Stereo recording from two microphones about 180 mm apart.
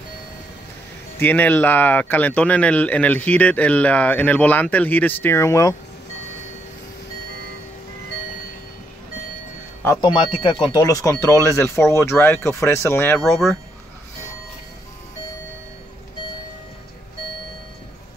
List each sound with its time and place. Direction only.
1.1 s speech: 10° left (ahead or behind)
9.9 s speech: 25° left (ahead or behind)